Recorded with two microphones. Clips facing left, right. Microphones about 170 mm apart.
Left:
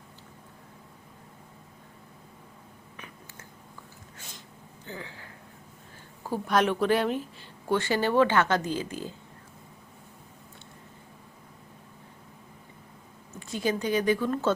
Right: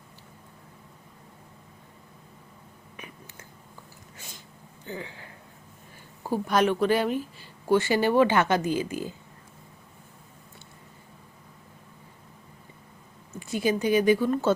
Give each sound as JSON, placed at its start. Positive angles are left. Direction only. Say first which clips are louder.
{"t": 4.9, "sound": "speech", "louder": "right 4 dB", "side_deg": -20}
{"t": 6.5, "sound": "speech", "louder": "right 1 dB", "side_deg": 0}
{"t": 13.4, "sound": "speech", "louder": "right 3 dB", "side_deg": -10}